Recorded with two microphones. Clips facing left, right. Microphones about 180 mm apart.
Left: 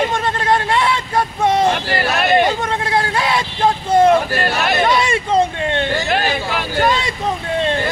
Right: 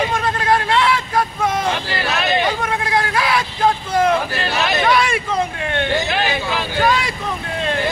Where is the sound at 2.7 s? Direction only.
25° left (ahead or behind).